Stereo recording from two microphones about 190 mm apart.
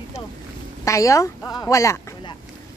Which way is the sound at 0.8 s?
15° left (ahead or behind).